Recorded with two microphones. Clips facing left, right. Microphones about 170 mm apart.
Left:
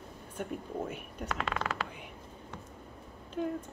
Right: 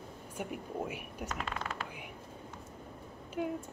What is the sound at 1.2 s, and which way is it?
Speech, 80° left.